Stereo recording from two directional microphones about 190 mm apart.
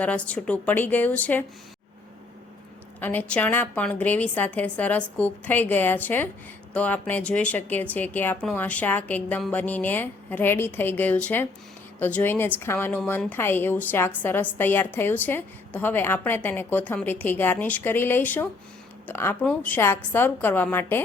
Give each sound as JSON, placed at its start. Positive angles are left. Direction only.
{"t": 0.0, "sound": "speech", "side_deg": 5}
{"t": 3.0, "sound": "speech", "side_deg": 10}